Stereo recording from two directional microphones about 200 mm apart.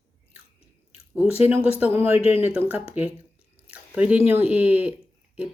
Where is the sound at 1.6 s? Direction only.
30° left (ahead or behind).